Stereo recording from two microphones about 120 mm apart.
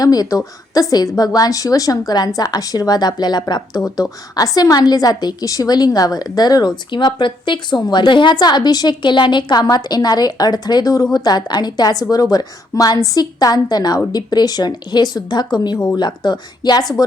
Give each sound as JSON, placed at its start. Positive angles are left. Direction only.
{"t": 0.0, "sound": "a woman's voice", "side_deg": 30}